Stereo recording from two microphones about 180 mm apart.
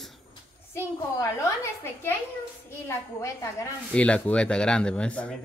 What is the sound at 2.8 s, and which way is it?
Speech, 15° left (ahead or behind).